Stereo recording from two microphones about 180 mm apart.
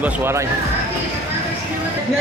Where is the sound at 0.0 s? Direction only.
15° right (ahead or behind).